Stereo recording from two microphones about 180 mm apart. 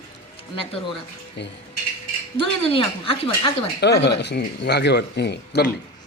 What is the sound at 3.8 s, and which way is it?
Speech, 70° left (ahead or behind).